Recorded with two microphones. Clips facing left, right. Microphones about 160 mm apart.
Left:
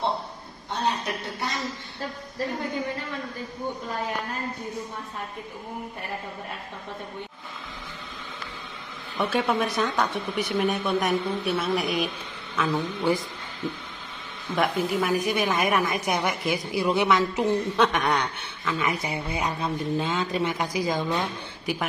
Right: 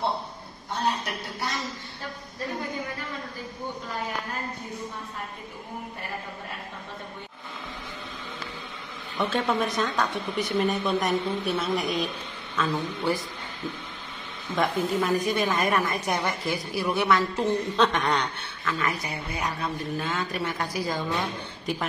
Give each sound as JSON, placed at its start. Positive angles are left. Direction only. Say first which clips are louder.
{"t": 9.2, "sound": "speech", "louder": "left 1 dB", "side_deg": 5}
{"t": 12.5, "sound": "a woman's voice", "louder": "left 2 dB", "side_deg": 20}
{"t": 14.5, "sound": "a woman's voice", "louder": "left 1 dB", "side_deg": 10}